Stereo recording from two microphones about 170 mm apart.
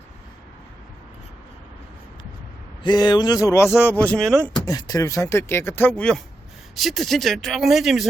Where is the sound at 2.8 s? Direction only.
25° left (ahead or behind); by 4.3 s 5° left (ahead or behind).